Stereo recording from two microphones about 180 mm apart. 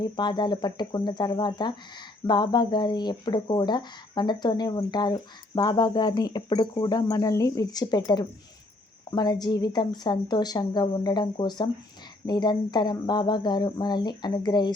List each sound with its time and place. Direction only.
0.0 s speech: 25° left (ahead or behind)